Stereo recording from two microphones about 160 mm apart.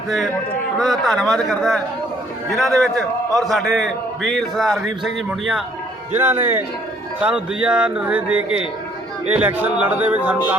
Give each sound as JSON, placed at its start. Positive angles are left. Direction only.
{"t": 0.8, "sound": "a man's voice", "side_deg": 0}
{"t": 6.1, "sound": "speech", "side_deg": -15}